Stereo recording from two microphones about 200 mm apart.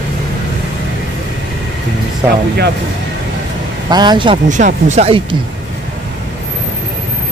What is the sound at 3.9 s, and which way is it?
Speech, 20° right (ahead or behind).